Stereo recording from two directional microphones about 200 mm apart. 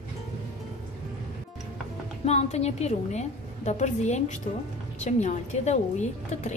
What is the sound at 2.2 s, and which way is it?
A woman's voice, 30° left (ahead or behind).